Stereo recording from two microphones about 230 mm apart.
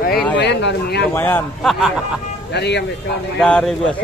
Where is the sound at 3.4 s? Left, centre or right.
Centre.